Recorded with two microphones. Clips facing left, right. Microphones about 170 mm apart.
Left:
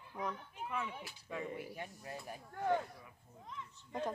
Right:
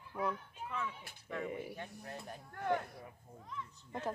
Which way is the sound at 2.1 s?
10° left (ahead or behind).